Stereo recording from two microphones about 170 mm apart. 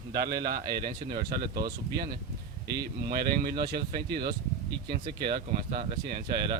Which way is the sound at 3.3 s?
25° right (ahead or behind).